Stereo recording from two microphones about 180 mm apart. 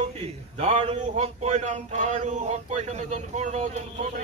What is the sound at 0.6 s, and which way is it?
Speech, 35° right (ahead or behind).